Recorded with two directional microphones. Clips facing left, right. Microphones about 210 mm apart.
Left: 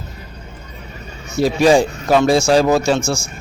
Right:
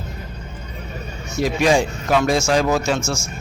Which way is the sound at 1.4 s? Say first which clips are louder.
Left 5 dB; 35° left (ahead or behind).